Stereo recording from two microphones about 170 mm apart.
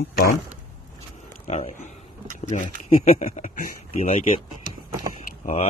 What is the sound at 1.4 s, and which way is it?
Speech, 40° left (ahead or behind).